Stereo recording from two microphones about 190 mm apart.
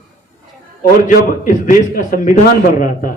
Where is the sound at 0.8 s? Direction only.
45° left (ahead or behind).